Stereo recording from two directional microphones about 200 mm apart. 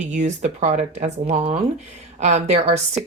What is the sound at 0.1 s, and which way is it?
Speech, 35° right (ahead or behind).